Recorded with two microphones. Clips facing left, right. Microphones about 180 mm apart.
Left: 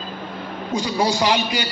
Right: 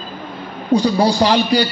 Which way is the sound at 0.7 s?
35° right (ahead or behind).